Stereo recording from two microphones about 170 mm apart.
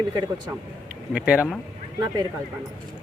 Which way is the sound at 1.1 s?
5° right (ahead or behind).